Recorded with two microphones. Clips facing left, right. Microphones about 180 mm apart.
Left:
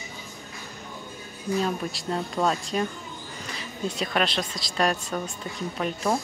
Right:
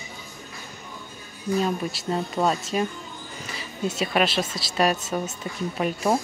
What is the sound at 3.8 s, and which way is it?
A woman's voice, 5° right (ahead or behind).